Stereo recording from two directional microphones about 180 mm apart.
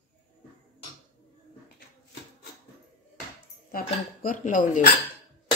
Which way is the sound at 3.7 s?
50° left (ahead or behind).